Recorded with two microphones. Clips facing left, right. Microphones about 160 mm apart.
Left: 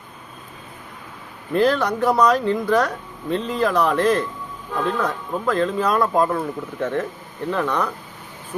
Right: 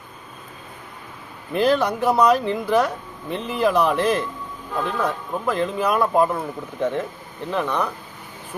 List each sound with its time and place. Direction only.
1.5 s speech: 15° right (ahead or behind)